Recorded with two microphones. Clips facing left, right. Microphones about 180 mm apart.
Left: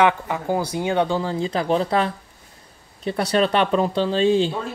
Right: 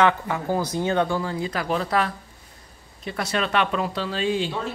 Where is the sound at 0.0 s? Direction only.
15° left (ahead or behind).